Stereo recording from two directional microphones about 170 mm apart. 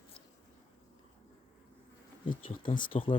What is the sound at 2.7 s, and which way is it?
Speech, 55° left (ahead or behind).